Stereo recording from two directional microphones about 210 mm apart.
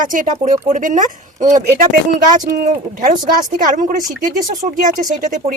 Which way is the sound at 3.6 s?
40° right (ahead or behind).